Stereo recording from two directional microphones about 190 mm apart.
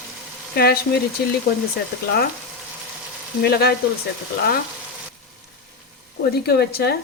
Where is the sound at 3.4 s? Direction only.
55° left (ahead or behind).